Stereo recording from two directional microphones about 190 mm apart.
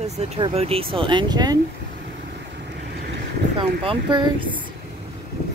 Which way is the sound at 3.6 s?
25° right (ahead or behind).